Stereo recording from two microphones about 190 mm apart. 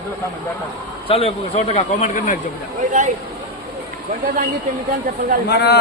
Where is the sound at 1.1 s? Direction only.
30° left (ahead or behind).